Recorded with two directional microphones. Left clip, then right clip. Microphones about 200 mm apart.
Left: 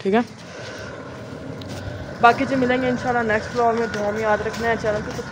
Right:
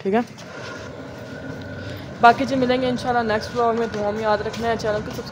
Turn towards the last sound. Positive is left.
turn(degrees=-5)  # may be behind; listen again after turning